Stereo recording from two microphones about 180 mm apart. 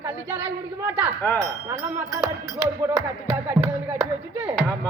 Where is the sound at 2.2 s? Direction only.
5° right (ahead or behind).